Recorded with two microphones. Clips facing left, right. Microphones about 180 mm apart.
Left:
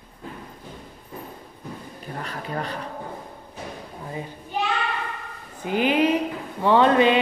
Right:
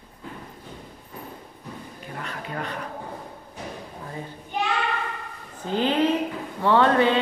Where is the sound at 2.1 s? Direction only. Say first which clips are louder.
Left 2 dB; 35° left (ahead or behind).